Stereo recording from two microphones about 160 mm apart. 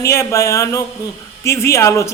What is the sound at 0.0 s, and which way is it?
Speech, 15° left (ahead or behind).